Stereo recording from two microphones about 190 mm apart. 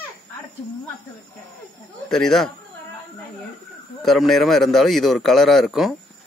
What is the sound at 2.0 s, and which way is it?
Speech, centre (ahead or behind).